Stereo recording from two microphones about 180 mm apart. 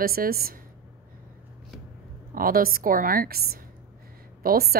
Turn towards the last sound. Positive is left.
turn(degrees=-55)  # may be behind; listen again after turning